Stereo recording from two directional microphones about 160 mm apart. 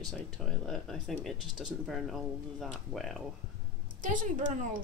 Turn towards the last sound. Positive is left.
turn(degrees=-55)  # may be behind; listen again after turning